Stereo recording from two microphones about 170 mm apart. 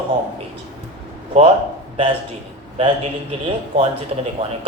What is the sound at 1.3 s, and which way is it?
Speech, 40° right (ahead or behind).